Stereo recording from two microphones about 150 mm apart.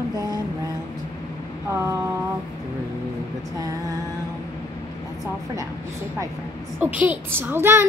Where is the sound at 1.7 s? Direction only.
20° right (ahead or behind).